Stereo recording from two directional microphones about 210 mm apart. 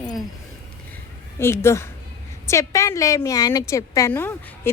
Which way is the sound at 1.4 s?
10° left (ahead or behind).